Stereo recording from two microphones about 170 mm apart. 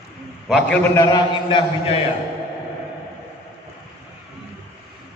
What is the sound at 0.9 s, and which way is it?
A man's voice, 25° left (ahead or behind).